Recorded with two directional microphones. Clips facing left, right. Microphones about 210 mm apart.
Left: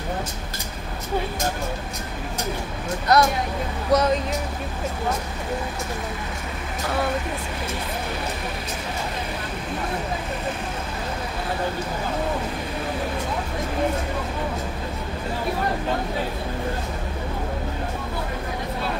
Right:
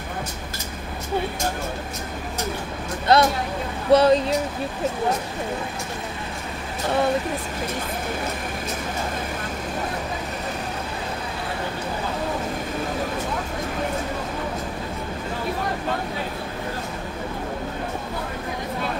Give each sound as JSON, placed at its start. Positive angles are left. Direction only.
{"t": 3.1, "sound": "speech", "side_deg": -30}